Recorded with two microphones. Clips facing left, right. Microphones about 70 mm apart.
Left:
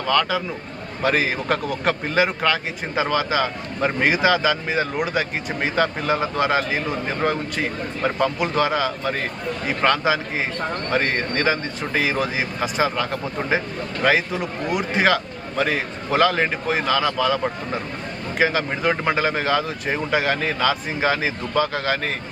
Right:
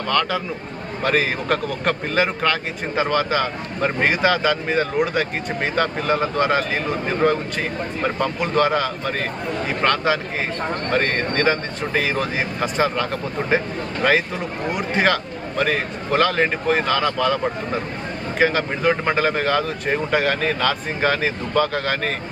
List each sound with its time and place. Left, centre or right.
0.1 s a man's voice: centre